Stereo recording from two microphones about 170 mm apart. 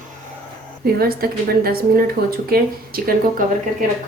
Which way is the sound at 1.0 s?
60° right (ahead or behind).